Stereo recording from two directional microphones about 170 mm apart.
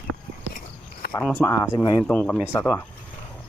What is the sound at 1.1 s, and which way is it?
Speech, 10° left (ahead or behind).